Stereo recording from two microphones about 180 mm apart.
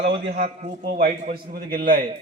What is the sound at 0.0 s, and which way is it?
Speech, 70° right (ahead or behind).